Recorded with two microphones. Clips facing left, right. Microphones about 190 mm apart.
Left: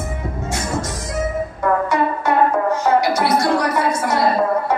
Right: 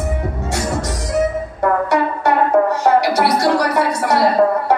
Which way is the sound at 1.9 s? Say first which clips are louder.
Right 2 dB; 70° right (ahead or behind).